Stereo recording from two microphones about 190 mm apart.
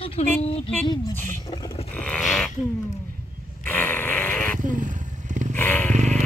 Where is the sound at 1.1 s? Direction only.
10° left (ahead or behind).